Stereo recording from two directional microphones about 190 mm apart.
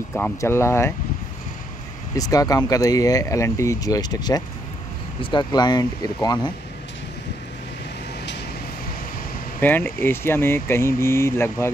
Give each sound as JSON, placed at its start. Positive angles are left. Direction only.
{"t": 0.1, "sound": "speech", "side_deg": 10}
{"t": 2.1, "sound": "speech", "side_deg": 20}
{"t": 9.6, "sound": "speech", "side_deg": 10}